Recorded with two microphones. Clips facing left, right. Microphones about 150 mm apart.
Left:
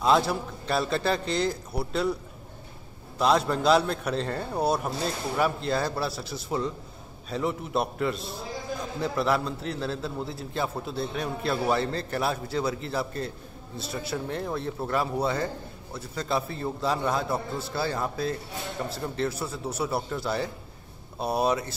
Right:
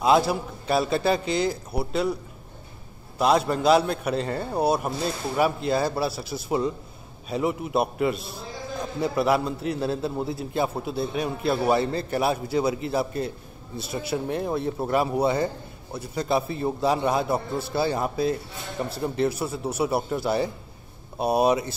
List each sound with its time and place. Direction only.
0.0 s speech: 10° right (ahead or behind)
3.2 s speech: 5° right (ahead or behind)